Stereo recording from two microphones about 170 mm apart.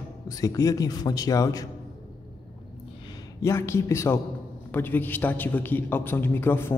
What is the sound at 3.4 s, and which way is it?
Speech, 15° left (ahead or behind).